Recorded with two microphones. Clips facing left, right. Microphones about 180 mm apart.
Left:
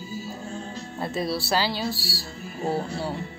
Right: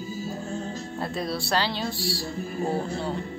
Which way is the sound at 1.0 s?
Centre (ahead or behind).